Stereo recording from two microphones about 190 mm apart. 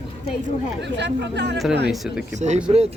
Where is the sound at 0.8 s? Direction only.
65° right (ahead or behind).